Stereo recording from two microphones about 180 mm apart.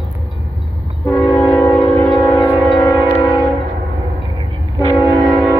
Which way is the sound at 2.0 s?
20° left (ahead or behind).